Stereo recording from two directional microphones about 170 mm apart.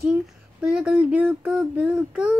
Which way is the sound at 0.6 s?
5° right (ahead or behind).